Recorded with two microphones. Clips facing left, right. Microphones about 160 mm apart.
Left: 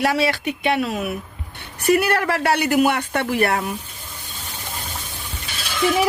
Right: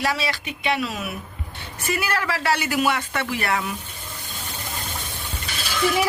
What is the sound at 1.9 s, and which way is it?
Speech, 65° left (ahead or behind).